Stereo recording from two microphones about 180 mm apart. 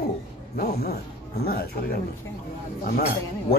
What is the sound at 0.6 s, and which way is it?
Speech, 60° left (ahead or behind).